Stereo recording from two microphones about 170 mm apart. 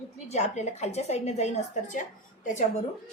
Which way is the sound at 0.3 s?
40° left (ahead or behind).